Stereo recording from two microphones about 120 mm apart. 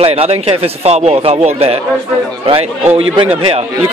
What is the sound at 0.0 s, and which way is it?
Speech, 55° right (ahead or behind).